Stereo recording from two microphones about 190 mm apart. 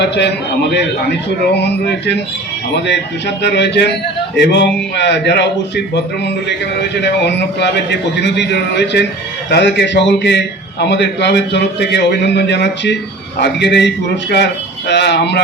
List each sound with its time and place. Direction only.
0.0 s a man's voice: 65° left (ahead or behind)
1.5 s a man's voice: 65° left (ahead or behind)